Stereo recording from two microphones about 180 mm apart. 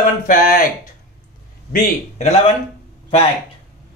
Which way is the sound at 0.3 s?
50° left (ahead or behind).